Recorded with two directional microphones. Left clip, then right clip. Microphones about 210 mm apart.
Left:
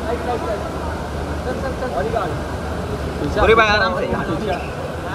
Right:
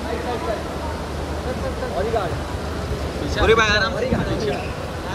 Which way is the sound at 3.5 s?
15° right (ahead or behind).